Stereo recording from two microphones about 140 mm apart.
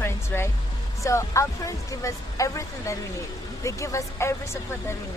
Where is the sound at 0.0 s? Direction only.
15° left (ahead or behind).